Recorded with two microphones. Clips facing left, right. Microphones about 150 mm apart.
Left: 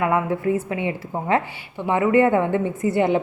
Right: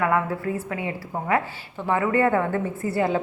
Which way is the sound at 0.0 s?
20° left (ahead or behind).